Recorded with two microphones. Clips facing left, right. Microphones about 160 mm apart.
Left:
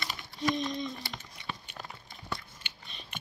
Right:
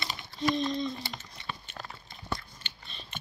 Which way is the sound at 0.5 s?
15° left (ahead or behind).